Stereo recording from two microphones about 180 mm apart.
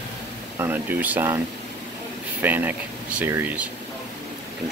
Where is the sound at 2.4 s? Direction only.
10° right (ahead or behind).